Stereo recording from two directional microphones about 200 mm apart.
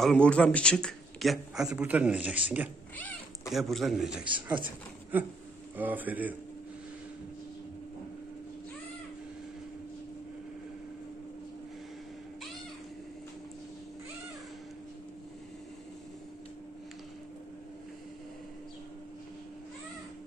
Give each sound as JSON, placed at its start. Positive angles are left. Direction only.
{"t": 0.0, "sound": "a man's voice", "side_deg": 5}
{"t": 3.0, "sound": "a man's voice", "side_deg": 10}